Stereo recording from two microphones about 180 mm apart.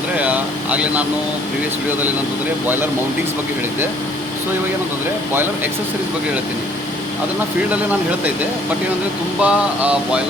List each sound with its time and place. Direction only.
0.2 s vehicle: 5° right (ahead or behind)
9.4 s speech: 5° right (ahead or behind)